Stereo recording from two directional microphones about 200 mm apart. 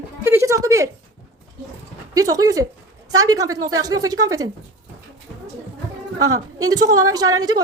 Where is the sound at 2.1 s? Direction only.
15° right (ahead or behind).